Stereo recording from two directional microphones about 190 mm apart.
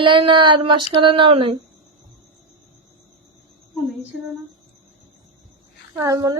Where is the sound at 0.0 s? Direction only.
25° right (ahead or behind).